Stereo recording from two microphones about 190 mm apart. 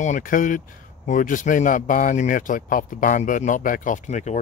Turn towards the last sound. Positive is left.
turn(degrees=40)  # may be behind; listen again after turning